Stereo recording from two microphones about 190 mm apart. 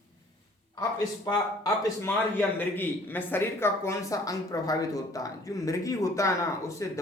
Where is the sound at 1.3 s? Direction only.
15° left (ahead or behind).